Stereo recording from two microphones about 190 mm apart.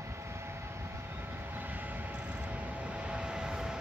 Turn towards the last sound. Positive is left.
turn(degrees=-5)  # may be behind; listen again after turning